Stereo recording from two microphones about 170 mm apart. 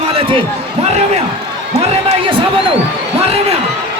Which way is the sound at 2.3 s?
30° right (ahead or behind).